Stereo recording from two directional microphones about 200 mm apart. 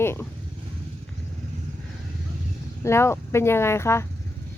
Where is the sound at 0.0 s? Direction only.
10° left (ahead or behind).